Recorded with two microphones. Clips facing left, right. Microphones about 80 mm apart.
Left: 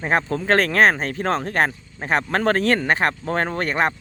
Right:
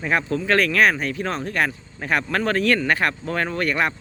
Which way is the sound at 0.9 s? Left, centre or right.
Left.